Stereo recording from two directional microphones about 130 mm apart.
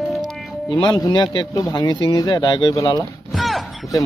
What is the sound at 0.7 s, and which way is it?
Speech, 40° left (ahead or behind).